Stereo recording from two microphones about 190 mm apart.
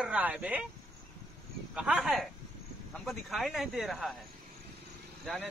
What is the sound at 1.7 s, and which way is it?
Speech, 5° right (ahead or behind).